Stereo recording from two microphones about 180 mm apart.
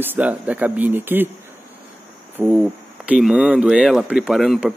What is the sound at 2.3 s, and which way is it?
Speech, 5° right (ahead or behind).